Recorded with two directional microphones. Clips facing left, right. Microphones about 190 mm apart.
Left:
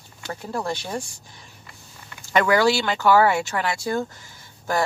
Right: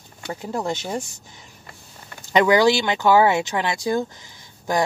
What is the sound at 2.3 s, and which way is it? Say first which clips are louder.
Speech: right 3 dB; 20° right (ahead or behind).